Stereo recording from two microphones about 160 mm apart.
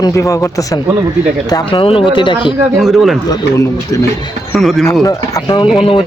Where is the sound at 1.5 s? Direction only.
35° left (ahead or behind).